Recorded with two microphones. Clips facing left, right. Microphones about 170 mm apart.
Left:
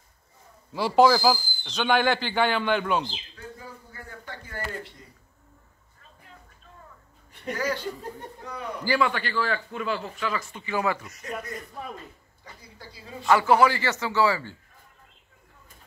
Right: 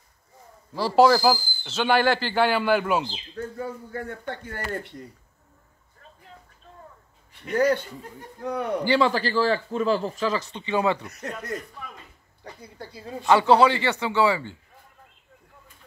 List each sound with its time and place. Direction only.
0.7 s speech: centre (ahead or behind)
3.3 s speech: 55° right (ahead or behind)
7.5 s speech: 55° right (ahead or behind)
8.8 s speech: 30° right (ahead or behind)
11.1 s speech: 65° right (ahead or behind)
12.7 s speech: 55° right (ahead or behind)
13.3 s a man's voice: 25° right (ahead or behind)